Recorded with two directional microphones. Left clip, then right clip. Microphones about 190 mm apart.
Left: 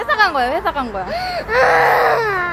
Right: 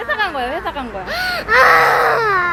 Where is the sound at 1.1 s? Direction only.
20° right (ahead or behind); by 2.5 s centre (ahead or behind).